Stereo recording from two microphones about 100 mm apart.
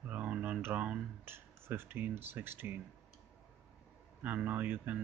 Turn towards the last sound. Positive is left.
turn(degrees=-15)  # may be behind; listen again after turning